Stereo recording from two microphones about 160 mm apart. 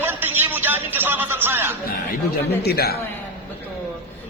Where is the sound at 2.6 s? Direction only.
80° left.